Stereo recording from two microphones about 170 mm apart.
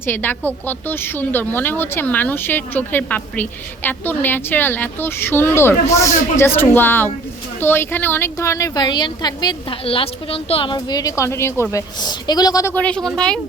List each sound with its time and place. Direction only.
0.0 s a woman's voice: 10° left (ahead or behind)
12.7 s a woman's voice: 5° left (ahead or behind)